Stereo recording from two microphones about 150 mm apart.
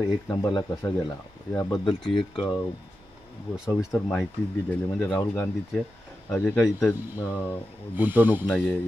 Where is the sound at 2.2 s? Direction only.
35° left (ahead or behind).